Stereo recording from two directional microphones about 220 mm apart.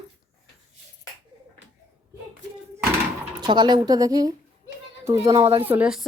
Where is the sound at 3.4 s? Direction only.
20° right (ahead or behind); by 6.1 s 5° right (ahead or behind).